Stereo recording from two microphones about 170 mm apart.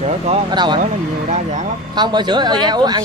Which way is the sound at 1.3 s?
45° right (ahead or behind).